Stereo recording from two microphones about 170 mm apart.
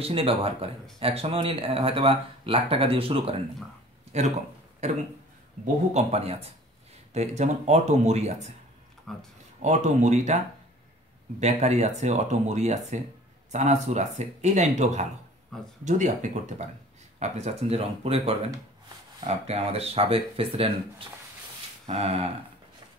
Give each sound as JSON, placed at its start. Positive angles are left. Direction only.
{"t": 0.0, "sound": "speech", "side_deg": -35}
{"t": 4.8, "sound": "speech", "side_deg": -40}
{"t": 9.1, "sound": "speech", "side_deg": 5}
{"t": 9.6, "sound": "speech", "side_deg": -45}
{"t": 21.8, "sound": "speech", "side_deg": -35}